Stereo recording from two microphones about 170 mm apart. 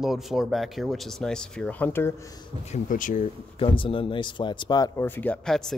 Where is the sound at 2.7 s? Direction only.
50° left (ahead or behind).